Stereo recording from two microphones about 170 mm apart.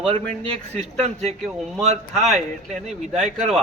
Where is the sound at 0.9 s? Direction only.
40° right (ahead or behind).